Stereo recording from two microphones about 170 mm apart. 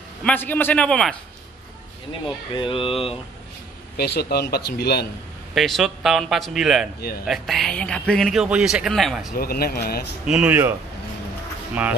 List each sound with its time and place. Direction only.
0.2 s a man's voice: 10° left (ahead or behind)
2.5 s speech: 30° left (ahead or behind)
3.9 s speech: 70° left (ahead or behind)
5.5 s a man's voice: centre (ahead or behind)
9.4 s speech: 60° left (ahead or behind)
10.2 s speech: 5° right (ahead or behind)